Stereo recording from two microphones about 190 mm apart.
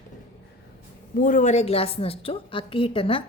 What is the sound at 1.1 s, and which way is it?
A woman's voice, 45° left (ahead or behind).